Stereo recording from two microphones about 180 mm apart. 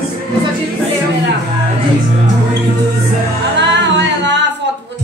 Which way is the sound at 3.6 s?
75° right (ahead or behind).